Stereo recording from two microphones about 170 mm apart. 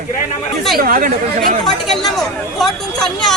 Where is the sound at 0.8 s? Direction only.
55° right (ahead or behind).